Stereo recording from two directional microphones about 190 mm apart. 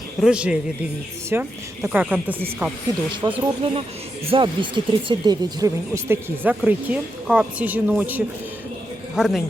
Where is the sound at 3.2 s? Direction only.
25° right (ahead or behind).